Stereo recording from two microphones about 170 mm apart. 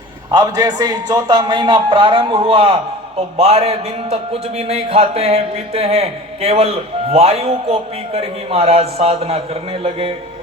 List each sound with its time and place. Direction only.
0.3 s a man's voice: 25° right (ahead or behind)